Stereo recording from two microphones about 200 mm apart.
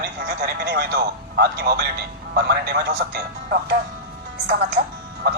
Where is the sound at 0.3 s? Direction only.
50° right (ahead or behind).